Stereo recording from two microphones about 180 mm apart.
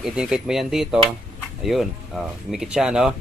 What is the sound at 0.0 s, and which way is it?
Speech, 5° right (ahead or behind).